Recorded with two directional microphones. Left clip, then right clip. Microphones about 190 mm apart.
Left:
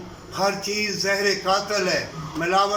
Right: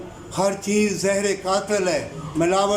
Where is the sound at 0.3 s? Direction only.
25° right (ahead or behind).